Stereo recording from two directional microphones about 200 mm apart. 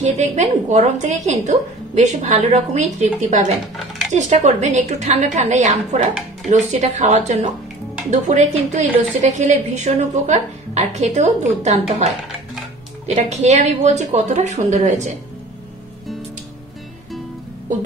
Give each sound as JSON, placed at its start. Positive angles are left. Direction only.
{"t": 0.0, "sound": "a woman's voice", "side_deg": -35}
{"t": 13.0, "sound": "a woman's voice", "side_deg": -35}